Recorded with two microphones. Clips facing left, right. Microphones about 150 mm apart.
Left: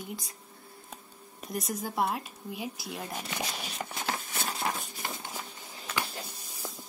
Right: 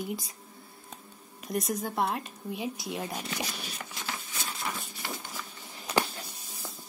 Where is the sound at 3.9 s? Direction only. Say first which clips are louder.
Left 5 dB; 55° left (ahead or behind).